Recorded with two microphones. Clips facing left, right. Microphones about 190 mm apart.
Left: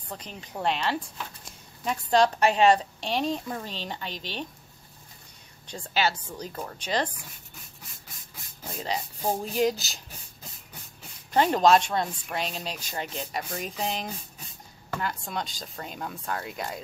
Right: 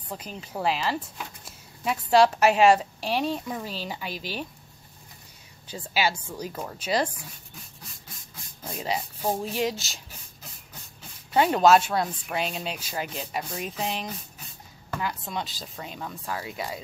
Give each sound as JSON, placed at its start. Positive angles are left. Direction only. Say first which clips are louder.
{"t": 0.1, "sound": "speech", "louder": "right 3 dB", "side_deg": -5}
{"t": 5.7, "sound": "speech", "louder": "even", "side_deg": -10}
{"t": 8.8, "sound": "speech", "louder": "right 1 dB", "side_deg": -5}
{"t": 11.3, "sound": "speech", "louder": "right 1 dB", "side_deg": -5}
{"t": 15.0, "sound": "speech", "louder": "right 1 dB", "side_deg": 0}